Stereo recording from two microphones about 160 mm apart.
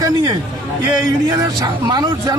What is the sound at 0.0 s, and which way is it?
Speech, 25° right (ahead or behind).